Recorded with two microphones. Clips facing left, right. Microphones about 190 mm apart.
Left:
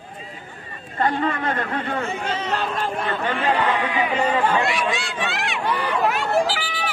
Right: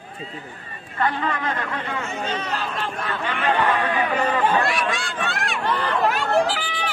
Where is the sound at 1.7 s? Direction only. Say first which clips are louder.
Left 3 dB; 55° left (ahead or behind).